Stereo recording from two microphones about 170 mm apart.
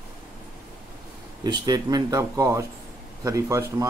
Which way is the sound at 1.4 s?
25° right (ahead or behind).